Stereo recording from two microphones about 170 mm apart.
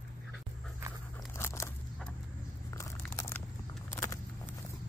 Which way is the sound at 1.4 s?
15° left (ahead or behind).